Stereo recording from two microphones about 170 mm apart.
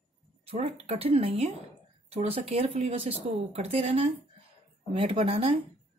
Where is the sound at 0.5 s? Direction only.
35° right (ahead or behind).